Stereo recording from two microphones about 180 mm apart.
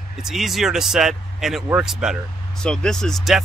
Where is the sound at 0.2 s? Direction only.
Centre (ahead or behind).